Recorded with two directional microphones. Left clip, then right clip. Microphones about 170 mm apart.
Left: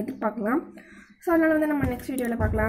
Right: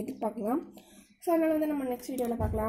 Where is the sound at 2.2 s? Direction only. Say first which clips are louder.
Left 7 dB; 20° left (ahead or behind).